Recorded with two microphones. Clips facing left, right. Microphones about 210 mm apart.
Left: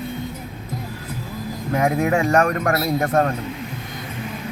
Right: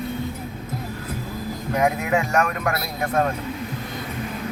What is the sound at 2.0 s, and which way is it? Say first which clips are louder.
Speech: left 4 dB; 40° left (ahead or behind).